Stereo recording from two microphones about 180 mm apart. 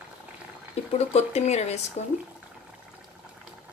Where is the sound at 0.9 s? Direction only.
35° left (ahead or behind).